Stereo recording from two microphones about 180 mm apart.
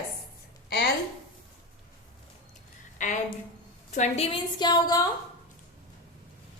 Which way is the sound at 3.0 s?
45° left (ahead or behind).